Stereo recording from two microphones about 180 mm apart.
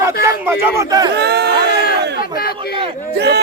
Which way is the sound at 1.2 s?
65° right (ahead or behind).